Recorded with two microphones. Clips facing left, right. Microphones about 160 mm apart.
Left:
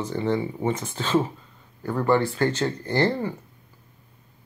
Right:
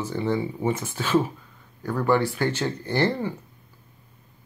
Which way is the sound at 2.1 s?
10° right (ahead or behind).